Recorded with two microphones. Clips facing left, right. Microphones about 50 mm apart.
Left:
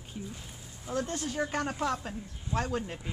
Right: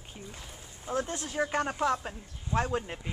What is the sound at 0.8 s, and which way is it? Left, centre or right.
Speech, right.